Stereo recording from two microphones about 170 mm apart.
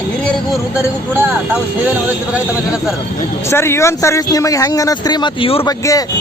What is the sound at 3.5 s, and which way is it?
Speech, 15° left (ahead or behind).